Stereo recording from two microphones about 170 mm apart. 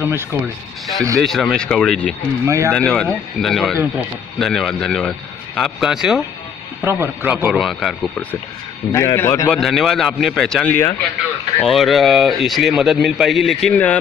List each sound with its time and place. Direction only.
0.0 s a man's voice: 15° right (ahead or behind)
1.2 s speech: centre (ahead or behind)
2.4 s a man's voice: 15° right (ahead or behind)
2.7 s speech: 5° left (ahead or behind)
6.8 s a man's voice: 15° right (ahead or behind)
8.9 s a man's voice: 15° left (ahead or behind)
9.5 s speech: centre (ahead or behind)